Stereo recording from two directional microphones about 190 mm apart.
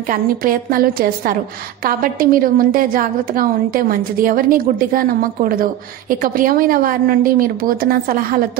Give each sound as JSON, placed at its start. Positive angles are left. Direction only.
{"t": 0.1, "sound": "a woman's voice", "side_deg": -50}